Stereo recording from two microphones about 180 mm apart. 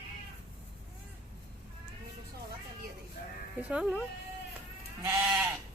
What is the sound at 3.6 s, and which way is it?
Speech, 5° right (ahead or behind).